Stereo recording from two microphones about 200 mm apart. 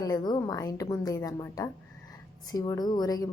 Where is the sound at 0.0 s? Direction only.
20° left (ahead or behind).